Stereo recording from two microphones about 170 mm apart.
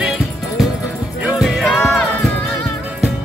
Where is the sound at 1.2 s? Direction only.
5° right (ahead or behind).